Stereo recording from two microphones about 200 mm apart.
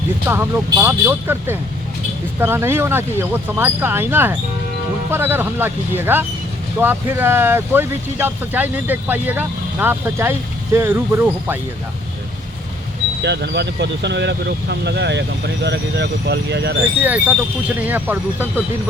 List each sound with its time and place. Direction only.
0.3 s speech: 10° right (ahead or behind)
13.2 s speech: 60° right (ahead or behind)
17.0 s speech: 10° right (ahead or behind)